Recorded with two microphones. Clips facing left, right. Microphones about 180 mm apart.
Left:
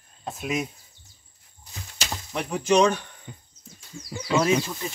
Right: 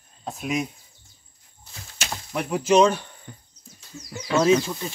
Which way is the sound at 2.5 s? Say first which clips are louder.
Right 2 dB; 5° right (ahead or behind).